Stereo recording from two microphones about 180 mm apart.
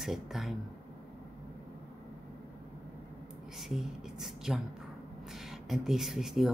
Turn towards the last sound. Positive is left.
turn(degrees=0)  # may be behind; listen again after turning